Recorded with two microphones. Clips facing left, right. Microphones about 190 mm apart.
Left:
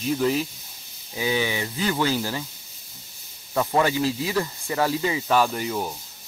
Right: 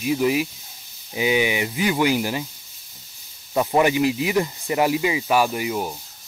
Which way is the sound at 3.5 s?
15° right (ahead or behind).